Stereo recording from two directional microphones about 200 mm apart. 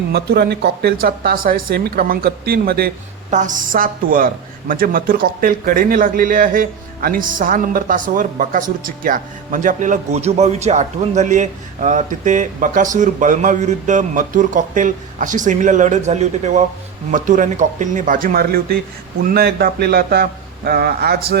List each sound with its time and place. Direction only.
0.1 s a man's voice: 55° right (ahead or behind)